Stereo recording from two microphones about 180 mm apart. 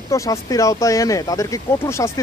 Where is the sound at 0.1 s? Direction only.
15° left (ahead or behind).